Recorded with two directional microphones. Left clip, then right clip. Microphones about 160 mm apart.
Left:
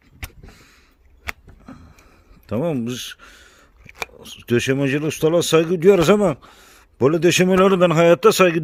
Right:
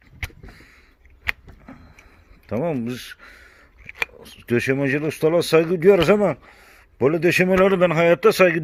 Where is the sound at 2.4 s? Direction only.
45° left (ahead or behind).